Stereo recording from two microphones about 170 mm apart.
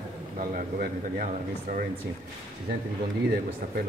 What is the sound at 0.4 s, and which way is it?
Speech, 55° right (ahead or behind).